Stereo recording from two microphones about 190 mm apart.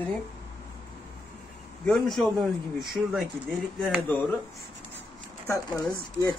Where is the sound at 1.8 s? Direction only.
Centre (ahead or behind).